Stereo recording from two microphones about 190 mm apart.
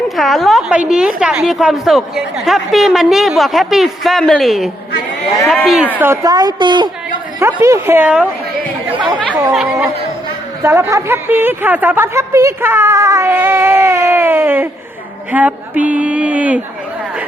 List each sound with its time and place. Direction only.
0.2 s a woman's voice: centre (ahead or behind)
6.0 s a woman's voice: 15° right (ahead or behind)
9.5 s a woman's voice: centre (ahead or behind)
10.6 s a woman's voice: 15° right (ahead or behind)
15.3 s a sound: 10° right (ahead or behind)